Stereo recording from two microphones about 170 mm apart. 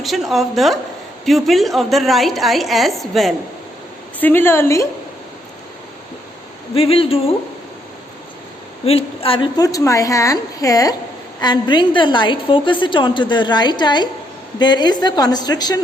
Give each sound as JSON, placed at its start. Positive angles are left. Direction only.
{"t": 0.0, "sound": "a woman's voice", "side_deg": 0}
{"t": 4.2, "sound": "a woman's voice", "side_deg": 10}
{"t": 6.7, "sound": "speech", "side_deg": 35}
{"t": 8.9, "sound": "a woman's voice", "side_deg": 35}